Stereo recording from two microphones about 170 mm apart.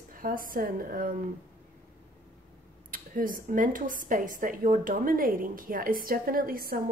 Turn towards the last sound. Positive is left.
turn(degrees=-60)  # may be behind; listen again after turning